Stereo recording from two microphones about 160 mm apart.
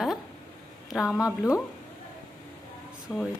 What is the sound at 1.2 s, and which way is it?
Speech, 20° left (ahead or behind).